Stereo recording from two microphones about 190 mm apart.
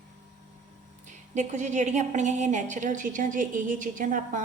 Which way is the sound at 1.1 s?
40° right (ahead or behind).